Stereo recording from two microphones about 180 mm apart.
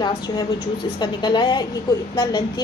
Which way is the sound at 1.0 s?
25° left (ahead or behind).